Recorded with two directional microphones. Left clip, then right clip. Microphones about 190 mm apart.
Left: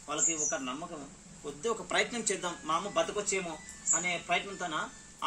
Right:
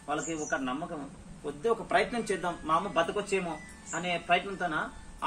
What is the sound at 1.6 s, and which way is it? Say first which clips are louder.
Speech: right 4 dB; 15° left (ahead or behind).